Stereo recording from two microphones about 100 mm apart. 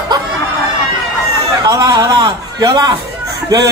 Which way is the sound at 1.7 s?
40° right (ahead or behind).